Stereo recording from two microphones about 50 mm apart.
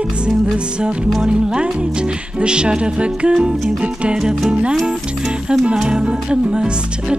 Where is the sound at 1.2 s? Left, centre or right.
Centre.